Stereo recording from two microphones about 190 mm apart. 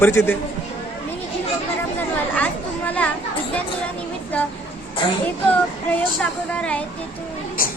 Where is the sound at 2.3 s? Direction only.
10° left (ahead or behind).